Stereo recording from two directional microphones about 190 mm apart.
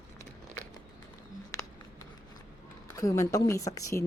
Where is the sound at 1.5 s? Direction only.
15° left (ahead or behind).